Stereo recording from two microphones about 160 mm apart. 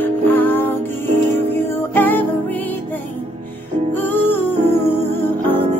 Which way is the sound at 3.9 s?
10° left (ahead or behind).